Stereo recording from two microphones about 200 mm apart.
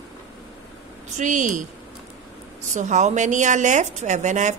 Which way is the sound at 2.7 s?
35° right (ahead or behind).